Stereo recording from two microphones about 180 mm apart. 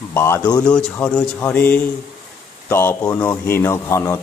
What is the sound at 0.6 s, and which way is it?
A man's voice, 5° left (ahead or behind).